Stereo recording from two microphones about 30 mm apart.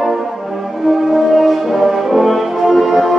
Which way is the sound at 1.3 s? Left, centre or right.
Centre.